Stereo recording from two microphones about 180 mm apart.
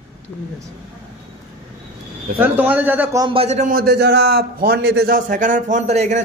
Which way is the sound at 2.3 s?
10° right (ahead or behind).